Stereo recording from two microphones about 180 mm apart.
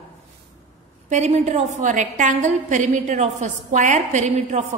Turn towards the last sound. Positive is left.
turn(degrees=-40)  # may be behind; listen again after turning